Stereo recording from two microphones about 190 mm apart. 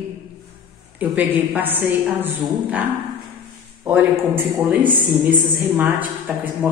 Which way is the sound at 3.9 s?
10° right (ahead or behind).